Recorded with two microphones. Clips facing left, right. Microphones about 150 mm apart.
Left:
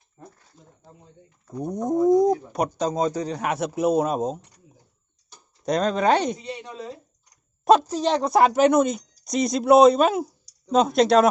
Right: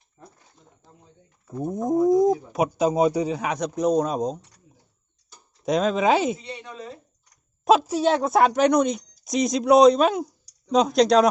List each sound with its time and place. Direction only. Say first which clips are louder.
1.5 s speech: right 1 dB; centre (ahead or behind)
5.6 s speech: even; centre (ahead or behind)
6.6 s speech: left 2 dB; 30° left (ahead or behind)
7.6 s speech: even; centre (ahead or behind)